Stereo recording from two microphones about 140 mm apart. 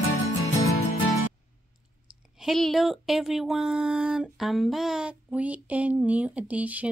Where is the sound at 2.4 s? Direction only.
Centre (ahead or behind).